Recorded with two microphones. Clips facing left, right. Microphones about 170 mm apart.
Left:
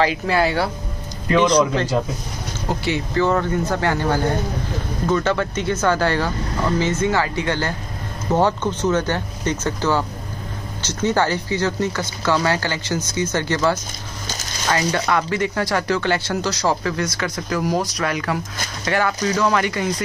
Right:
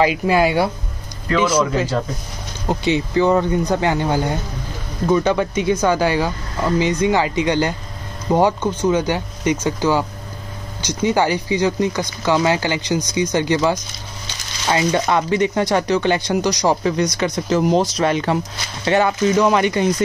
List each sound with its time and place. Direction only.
0.0 s speech: 15° right (ahead or behind)
2.7 s speech: 20° right (ahead or behind)